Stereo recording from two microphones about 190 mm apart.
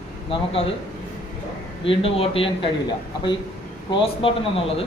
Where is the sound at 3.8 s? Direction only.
25° left (ahead or behind).